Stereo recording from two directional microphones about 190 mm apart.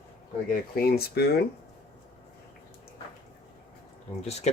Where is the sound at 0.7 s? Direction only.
55° left (ahead or behind).